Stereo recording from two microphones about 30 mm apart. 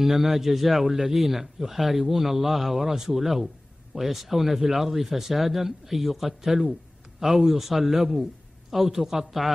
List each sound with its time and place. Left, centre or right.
0.0 s a man's voice: centre